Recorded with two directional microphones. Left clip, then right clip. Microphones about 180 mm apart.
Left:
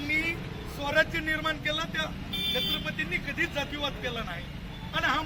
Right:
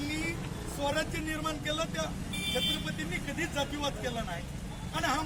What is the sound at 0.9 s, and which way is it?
Speech, 15° right (ahead or behind).